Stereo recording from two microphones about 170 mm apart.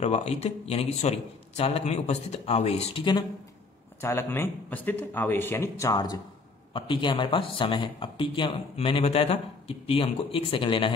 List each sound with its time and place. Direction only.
0.0 s speech: 40° left (ahead or behind)
4.0 s speech: 15° left (ahead or behind); by 10.9 s 30° left (ahead or behind)